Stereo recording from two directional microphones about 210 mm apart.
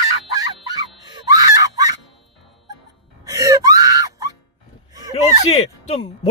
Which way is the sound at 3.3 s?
15° right (ahead or behind).